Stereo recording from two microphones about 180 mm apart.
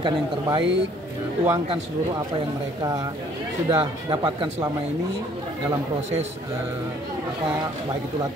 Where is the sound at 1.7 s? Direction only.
25° right (ahead or behind).